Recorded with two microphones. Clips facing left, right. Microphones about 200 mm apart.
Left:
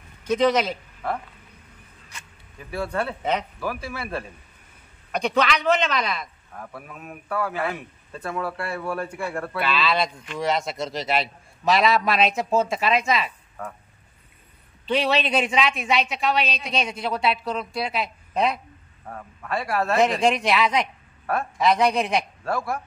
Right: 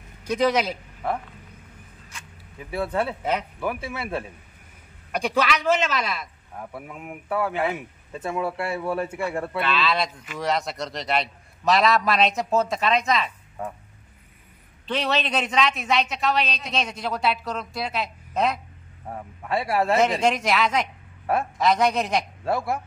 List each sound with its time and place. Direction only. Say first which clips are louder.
0.4 s a man's voice: left 1 dB; 10° right (ahead or behind)
2.7 s a man's voice: right 1 dB; 20° right (ahead or behind)
5.1 s speech: left 1 dB; 10° right (ahead or behind)
6.6 s a man's voice: right 2 dB; 20° right (ahead or behind)
9.6 s speech: left 2 dB; centre (ahead or behind)
14.9 s speech: left 3 dB; 5° left (ahead or behind)
19.0 s a man's voice: right 2 dB; 20° right (ahead or behind)
20.0 s speech: left 1 dB; centre (ahead or behind)
22.4 s a man's voice: right 2 dB; 25° right (ahead or behind)